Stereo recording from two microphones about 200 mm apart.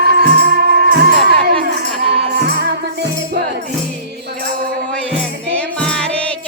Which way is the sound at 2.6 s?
55° right (ahead or behind).